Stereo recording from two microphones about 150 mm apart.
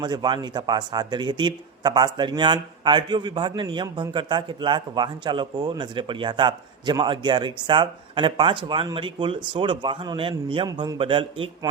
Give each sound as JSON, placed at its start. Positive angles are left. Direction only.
{"t": 0.0, "sound": "a man's voice", "side_deg": -30}